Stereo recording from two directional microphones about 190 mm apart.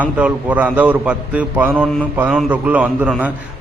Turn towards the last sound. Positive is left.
turn(degrees=-5)  # may be behind; listen again after turning